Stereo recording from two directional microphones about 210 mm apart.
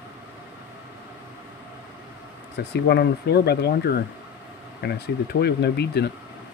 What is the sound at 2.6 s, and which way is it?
Speech, 55° left (ahead or behind).